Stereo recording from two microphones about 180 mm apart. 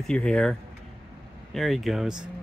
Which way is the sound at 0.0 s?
5° left (ahead or behind).